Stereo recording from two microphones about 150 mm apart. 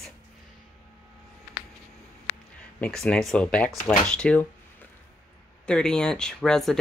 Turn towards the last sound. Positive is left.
turn(degrees=5)  # may be behind; listen again after turning